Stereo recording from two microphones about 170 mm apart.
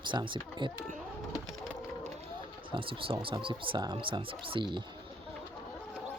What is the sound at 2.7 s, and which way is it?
Speech, 30° right (ahead or behind).